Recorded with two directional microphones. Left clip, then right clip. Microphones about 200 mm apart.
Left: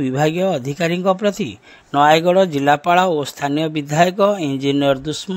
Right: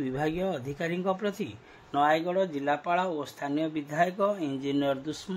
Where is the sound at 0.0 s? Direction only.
40° left (ahead or behind).